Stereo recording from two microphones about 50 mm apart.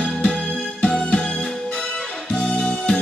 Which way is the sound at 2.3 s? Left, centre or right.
Left.